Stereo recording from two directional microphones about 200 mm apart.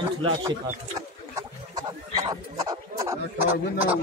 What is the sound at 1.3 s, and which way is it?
Speech, 20° right (ahead or behind).